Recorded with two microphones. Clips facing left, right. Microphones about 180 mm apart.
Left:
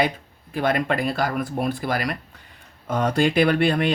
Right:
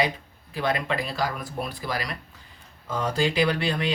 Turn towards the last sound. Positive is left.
turn(degrees=55)  # may be behind; listen again after turning